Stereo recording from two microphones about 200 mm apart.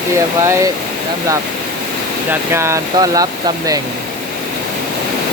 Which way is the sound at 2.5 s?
15° right (ahead or behind).